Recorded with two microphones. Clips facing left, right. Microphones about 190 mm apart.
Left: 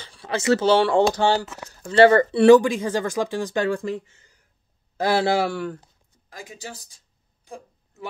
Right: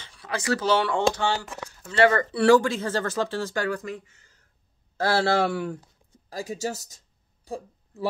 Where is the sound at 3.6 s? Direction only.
25° left (ahead or behind).